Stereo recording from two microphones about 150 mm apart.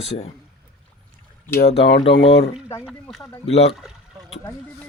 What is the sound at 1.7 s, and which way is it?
Speech, 40° left (ahead or behind).